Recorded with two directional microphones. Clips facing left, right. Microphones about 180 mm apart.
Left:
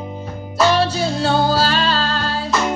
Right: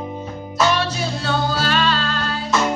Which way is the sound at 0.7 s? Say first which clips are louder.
Left 5 dB; 30° left (ahead or behind).